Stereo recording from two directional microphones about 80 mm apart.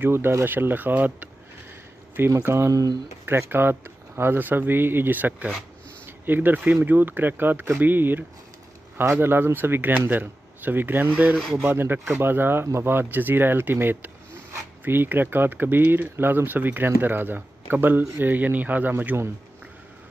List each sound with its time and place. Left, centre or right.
0.0 s speech: right
3.3 s speech: right